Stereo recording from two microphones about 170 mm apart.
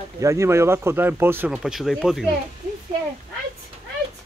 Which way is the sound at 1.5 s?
Centre (ahead or behind).